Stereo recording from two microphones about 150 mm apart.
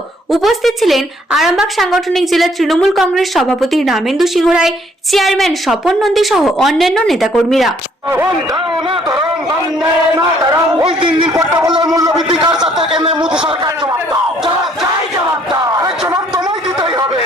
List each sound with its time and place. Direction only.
0.3 s a woman's voice: centre (ahead or behind)
10.8 s a man's voice: 35° right (ahead or behind)
12.6 s a woman's voice: 5° right (ahead or behind)
12.9 s a man's voice: 35° right (ahead or behind)
13.1 s a man's voice: 5° right (ahead or behind)
13.4 s speech: 30° right (ahead or behind)
15.6 s a sound: 20° right (ahead or behind)